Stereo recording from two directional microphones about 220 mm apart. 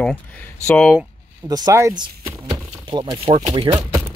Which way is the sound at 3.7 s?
10° right (ahead or behind).